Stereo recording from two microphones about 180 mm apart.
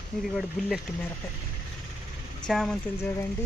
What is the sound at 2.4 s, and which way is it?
Speech, 5° left (ahead or behind).